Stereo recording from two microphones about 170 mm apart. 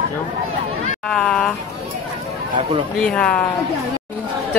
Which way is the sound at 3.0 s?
5° left (ahead or behind).